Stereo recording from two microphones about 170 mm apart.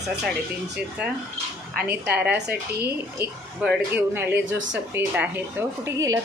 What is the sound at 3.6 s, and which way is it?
Speech, 5° right (ahead or behind).